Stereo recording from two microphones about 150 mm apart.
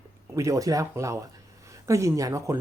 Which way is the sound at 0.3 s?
20° right (ahead or behind).